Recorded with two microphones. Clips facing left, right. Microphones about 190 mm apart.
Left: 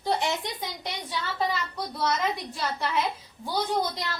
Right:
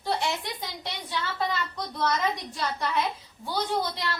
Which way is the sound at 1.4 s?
10° left (ahead or behind).